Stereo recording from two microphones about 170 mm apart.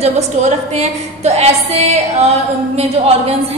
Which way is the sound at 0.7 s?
40° right (ahead or behind).